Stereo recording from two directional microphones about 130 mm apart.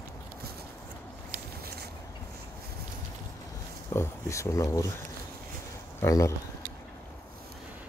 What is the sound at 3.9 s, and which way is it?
Speech, 20° left (ahead or behind).